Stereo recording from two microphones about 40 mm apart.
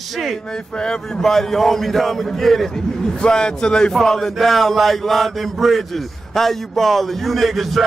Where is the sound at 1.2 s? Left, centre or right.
Centre.